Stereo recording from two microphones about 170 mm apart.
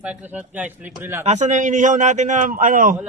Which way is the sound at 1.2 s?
45° right (ahead or behind).